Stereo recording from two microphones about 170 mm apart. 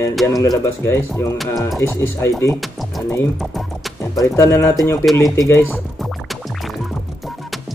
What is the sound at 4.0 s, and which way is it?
Music, 20° left (ahead or behind).